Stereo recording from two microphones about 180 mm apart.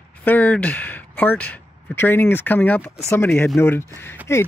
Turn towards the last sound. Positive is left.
turn(degrees=10)  # may be behind; listen again after turning